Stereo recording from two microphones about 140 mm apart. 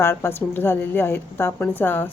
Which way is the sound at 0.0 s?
15° left (ahead or behind).